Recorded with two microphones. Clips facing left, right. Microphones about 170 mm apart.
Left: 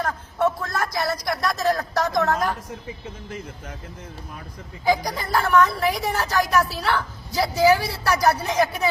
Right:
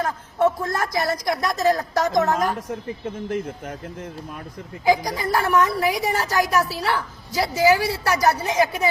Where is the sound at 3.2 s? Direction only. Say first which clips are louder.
Right 9 dB; 55° right (ahead or behind).